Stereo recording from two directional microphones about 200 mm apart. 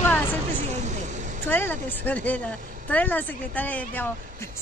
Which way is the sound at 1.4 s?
10° left (ahead or behind).